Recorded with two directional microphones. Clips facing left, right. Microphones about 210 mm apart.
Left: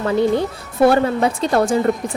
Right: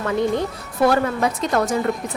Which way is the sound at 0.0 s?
30° left (ahead or behind).